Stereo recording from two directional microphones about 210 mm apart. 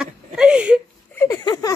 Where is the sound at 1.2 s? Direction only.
15° left (ahead or behind).